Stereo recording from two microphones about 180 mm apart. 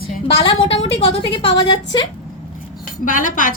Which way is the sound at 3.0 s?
50° left (ahead or behind).